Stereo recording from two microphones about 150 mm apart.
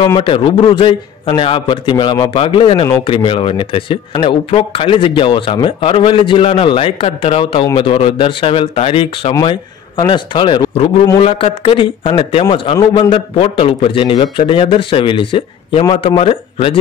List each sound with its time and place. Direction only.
0.0 s speech: 35° left (ahead or behind)